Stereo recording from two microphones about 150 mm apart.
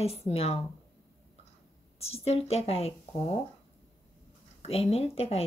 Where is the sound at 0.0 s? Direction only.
45° left (ahead or behind).